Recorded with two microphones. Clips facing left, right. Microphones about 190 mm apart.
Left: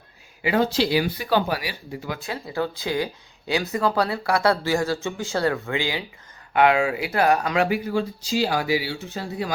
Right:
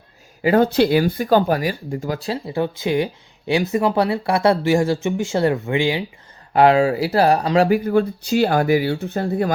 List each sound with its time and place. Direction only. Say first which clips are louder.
0.4 s speech: right 6 dB; 50° right (ahead or behind); by 6.1 s 25° right (ahead or behind)
6.5 s speech: right 5 dB; 35° right (ahead or behind)
7.9 s speech: right 7 dB; 60° right (ahead or behind)